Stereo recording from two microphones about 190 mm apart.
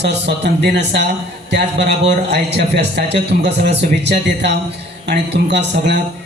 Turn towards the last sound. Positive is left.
turn(degrees=-65)  # may be behind; listen again after turning